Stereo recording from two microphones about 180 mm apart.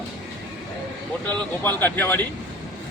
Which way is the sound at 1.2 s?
10° left (ahead or behind).